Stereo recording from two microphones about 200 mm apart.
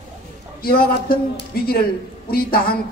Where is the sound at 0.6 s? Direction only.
50° left (ahead or behind).